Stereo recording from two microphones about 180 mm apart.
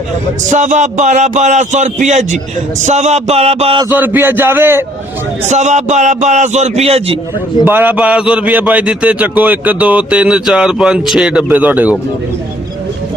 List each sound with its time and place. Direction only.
0.5 s a man's voice: 40° right (ahead or behind)
3.8 s a man's voice: 10° right (ahead or behind)
5.5 s a man's voice: 40° right (ahead or behind)
7.6 s a man's voice: 10° right (ahead or behind)